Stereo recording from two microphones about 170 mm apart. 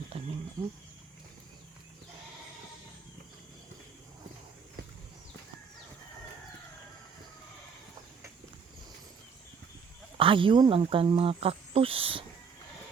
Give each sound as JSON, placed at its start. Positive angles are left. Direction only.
{"t": 10.2, "sound": "speech", "side_deg": -30}